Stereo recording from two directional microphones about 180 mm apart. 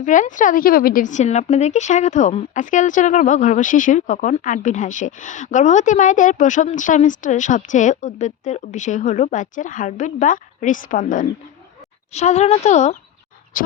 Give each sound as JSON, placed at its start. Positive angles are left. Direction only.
{"t": 0.0, "sound": "a woman's voice", "side_deg": 45}